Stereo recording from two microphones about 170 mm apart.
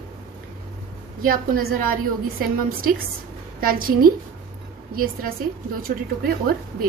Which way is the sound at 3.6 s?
60° right (ahead or behind).